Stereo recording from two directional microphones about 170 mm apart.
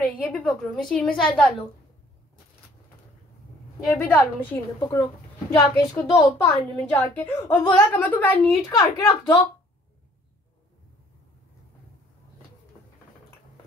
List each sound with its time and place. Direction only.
0.2 s a woman's voice: 5° left (ahead or behind)
3.9 s a woman's voice: 10° left (ahead or behind)
8.6 s speech: 20° left (ahead or behind)